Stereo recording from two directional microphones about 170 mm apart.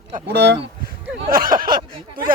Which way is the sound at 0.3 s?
75° right (ahead or behind).